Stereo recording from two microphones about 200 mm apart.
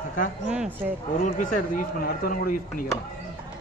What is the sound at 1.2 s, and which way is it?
Speech, 40° left (ahead or behind).